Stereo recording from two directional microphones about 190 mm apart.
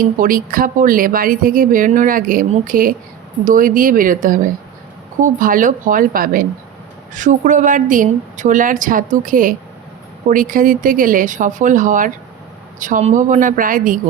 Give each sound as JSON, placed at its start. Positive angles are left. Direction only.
{"t": 0.0, "sound": "speech", "side_deg": -45}